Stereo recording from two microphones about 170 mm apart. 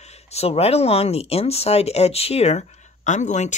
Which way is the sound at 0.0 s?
40° left (ahead or behind).